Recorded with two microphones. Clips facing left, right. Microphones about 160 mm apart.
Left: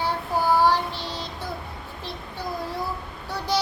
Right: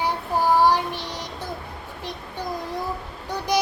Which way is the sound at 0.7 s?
15° right (ahead or behind).